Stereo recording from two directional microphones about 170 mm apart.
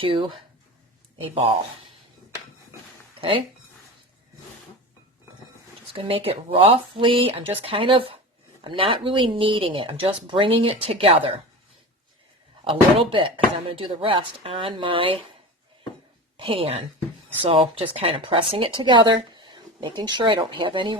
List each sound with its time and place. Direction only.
0.0 s speech: 30° right (ahead or behind)
3.2 s speech: 30° right (ahead or behind)
5.9 s speech: 35° right (ahead or behind)
12.6 s speech: 30° right (ahead or behind)
16.4 s speech: 35° right (ahead or behind)